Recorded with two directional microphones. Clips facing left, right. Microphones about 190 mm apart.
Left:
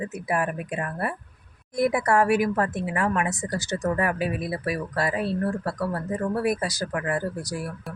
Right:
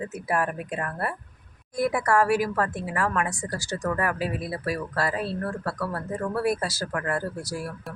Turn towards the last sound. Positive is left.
turn(degrees=15)  # may be behind; listen again after turning